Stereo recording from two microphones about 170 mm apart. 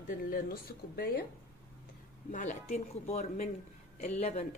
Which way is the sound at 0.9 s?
65° left (ahead or behind).